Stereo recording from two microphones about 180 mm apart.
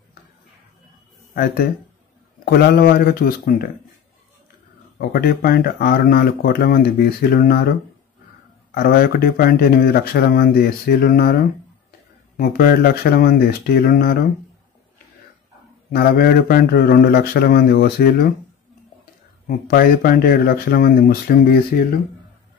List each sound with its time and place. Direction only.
1.3 s speech: 60° left (ahead or behind)
4.9 s speech: 55° left (ahead or behind)
8.7 s speech: 55° left (ahead or behind)
15.9 s speech: 60° left (ahead or behind)
19.4 s speech: 50° left (ahead or behind)